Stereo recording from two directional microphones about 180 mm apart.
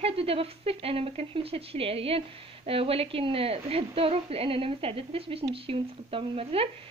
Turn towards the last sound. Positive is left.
turn(degrees=-30)  # may be behind; listen again after turning